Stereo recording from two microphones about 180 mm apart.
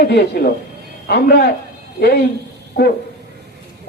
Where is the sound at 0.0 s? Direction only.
70° left (ahead or behind).